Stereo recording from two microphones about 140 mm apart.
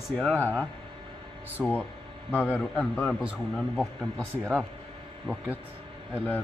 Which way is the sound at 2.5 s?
10° left (ahead or behind).